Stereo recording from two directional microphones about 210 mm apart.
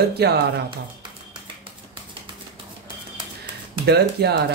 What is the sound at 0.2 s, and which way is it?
Speech, 50° right (ahead or behind).